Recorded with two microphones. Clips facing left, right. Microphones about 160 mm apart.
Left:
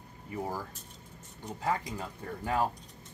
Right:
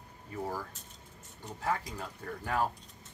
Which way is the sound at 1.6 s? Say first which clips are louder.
Left 2 dB; 20° left (ahead or behind).